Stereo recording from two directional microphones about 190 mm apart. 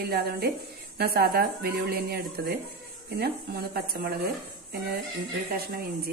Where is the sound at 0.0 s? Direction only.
50° right (ahead or behind).